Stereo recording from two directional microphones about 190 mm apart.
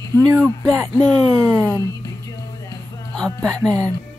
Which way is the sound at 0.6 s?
15° right (ahead or behind).